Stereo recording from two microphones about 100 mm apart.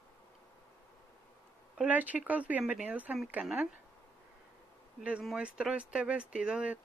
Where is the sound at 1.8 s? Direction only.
15° right (ahead or behind).